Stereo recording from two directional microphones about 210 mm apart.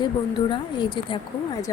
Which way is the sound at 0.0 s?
20° left (ahead or behind).